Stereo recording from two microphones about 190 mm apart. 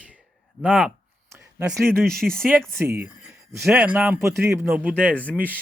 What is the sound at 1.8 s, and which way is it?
Speech, centre (ahead or behind).